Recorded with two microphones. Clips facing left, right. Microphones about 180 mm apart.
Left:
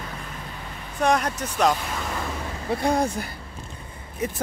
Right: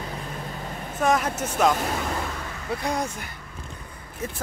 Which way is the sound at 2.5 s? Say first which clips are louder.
Left 5 dB; 30° left (ahead or behind).